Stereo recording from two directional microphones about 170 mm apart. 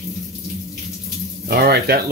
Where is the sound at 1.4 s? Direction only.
65° right (ahead or behind).